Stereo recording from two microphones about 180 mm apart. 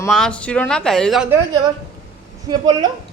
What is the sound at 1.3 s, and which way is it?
A woman's voice, 20° right (ahead or behind).